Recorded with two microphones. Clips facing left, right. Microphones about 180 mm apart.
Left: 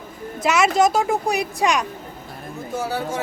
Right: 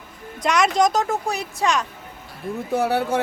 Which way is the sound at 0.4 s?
5° left (ahead or behind).